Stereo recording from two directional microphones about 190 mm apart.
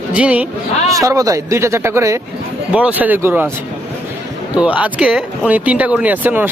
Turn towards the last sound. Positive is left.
turn(degrees=-10)  # may be behind; listen again after turning